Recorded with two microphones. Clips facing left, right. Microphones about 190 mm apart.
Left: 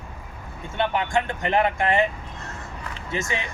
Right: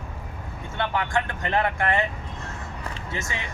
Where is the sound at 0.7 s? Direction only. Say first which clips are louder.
Left 3 dB; 20° left (ahead or behind).